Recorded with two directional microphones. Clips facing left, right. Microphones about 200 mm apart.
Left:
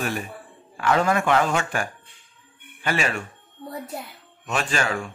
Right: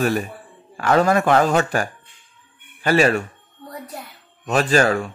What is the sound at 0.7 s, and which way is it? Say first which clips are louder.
Speech: right 4 dB; 40° right (ahead or behind).